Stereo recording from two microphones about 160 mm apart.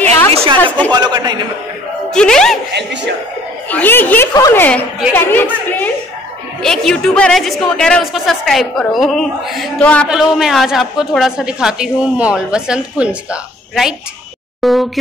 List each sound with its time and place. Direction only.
0.3 s a sound: 40° right (ahead or behind)
0.9 s a man's voice: 25° right (ahead or behind)
2.0 s speech: 5° left (ahead or behind)
2.7 s speech: 90° right
3.6 s a woman's voice: 10° left (ahead or behind)
10.0 s a woman's voice: 5° right (ahead or behind)